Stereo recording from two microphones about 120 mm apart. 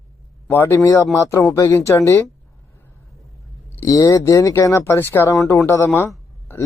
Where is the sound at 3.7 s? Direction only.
30° left (ahead or behind).